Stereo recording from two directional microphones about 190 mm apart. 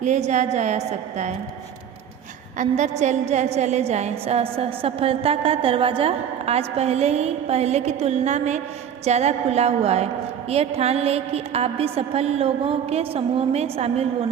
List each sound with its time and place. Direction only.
0.0 s a woman's voice: 40° right (ahead or behind)
2.6 s a woman's voice: 40° right (ahead or behind)